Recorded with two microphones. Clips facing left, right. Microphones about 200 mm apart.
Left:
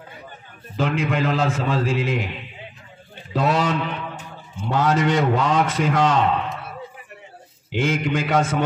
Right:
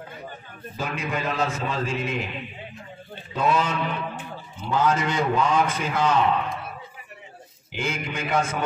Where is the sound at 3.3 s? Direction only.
85° left.